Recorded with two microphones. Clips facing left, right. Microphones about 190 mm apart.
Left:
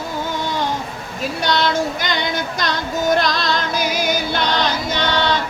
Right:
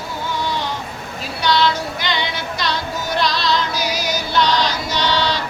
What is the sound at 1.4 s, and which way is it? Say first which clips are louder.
Child singing: right 1 dB; 45° left (ahead or behind).